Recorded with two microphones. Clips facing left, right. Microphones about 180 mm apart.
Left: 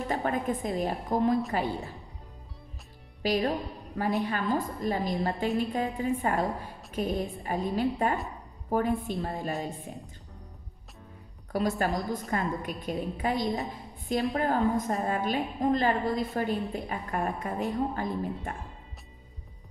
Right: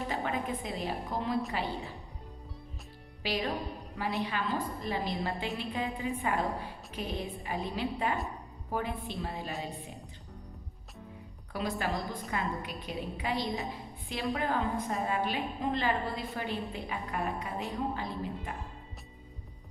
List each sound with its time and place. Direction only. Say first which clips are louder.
0.1 s a woman's voice: left 7 dB; 45° left (ahead or behind)
3.2 s a woman's voice: left 6 dB; 45° left (ahead or behind)
11.5 s a woman's voice: left 5 dB; 45° left (ahead or behind)